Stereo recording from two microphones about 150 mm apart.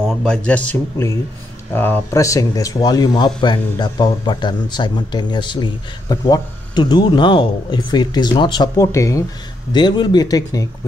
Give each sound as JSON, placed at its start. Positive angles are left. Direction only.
{"t": 0.2, "sound": "a man's voice", "side_deg": 5}